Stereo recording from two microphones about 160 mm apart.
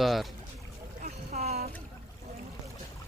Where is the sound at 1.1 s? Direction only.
40° right (ahead or behind).